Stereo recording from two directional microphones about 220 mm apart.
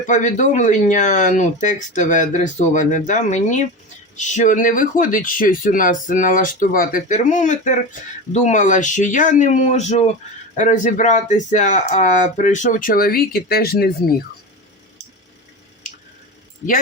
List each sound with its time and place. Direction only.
0.0 s speech: 35° left (ahead or behind)